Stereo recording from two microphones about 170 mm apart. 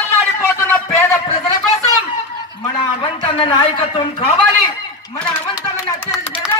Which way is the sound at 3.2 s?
30° left (ahead or behind).